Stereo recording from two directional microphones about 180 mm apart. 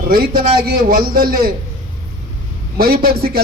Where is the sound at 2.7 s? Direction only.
55° right (ahead or behind).